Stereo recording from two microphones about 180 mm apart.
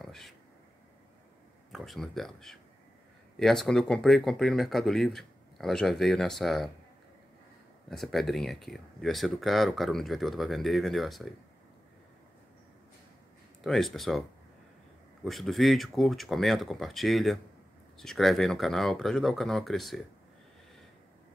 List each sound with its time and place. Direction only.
0.0 s a sound: centre (ahead or behind)
1.7 s speech: centre (ahead or behind)
7.9 s speech: centre (ahead or behind)
13.6 s speech: centre (ahead or behind)
15.2 s speech: centre (ahead or behind)